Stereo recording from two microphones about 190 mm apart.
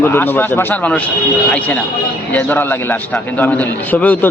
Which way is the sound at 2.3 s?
10° left (ahead or behind).